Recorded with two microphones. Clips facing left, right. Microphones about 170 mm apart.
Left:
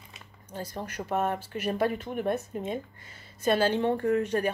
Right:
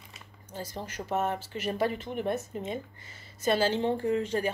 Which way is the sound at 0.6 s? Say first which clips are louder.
Left 2 dB; 60° left (ahead or behind).